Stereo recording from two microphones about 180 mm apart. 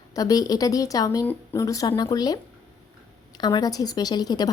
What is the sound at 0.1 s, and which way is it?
A woman's voice, 20° left (ahead or behind).